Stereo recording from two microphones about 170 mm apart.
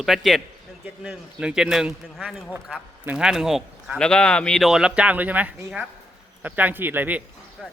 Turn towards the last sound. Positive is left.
turn(degrees=-10)  # may be behind; listen again after turning